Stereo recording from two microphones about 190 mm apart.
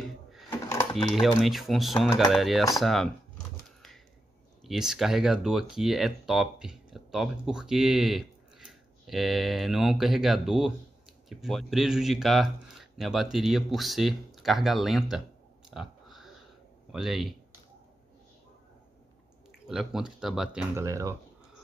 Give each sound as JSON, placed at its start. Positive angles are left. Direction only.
{"t": 0.0, "sound": "a sound", "side_deg": 0}
{"t": 0.5, "sound": "a sound", "side_deg": 15}
{"t": 0.9, "sound": "speech", "side_deg": 0}
{"t": 4.6, "sound": "speech", "side_deg": 0}
{"t": 15.7, "sound": "chewing", "side_deg": 0}
{"t": 16.9, "sound": "speech", "side_deg": 0}
{"t": 19.7, "sound": "speech", "side_deg": 0}
{"t": 20.7, "sound": "speech", "side_deg": -15}